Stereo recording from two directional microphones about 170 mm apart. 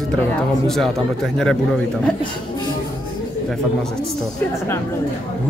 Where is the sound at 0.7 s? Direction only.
Centre (ahead or behind).